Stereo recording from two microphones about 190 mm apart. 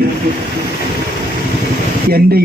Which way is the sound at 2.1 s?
55° right (ahead or behind).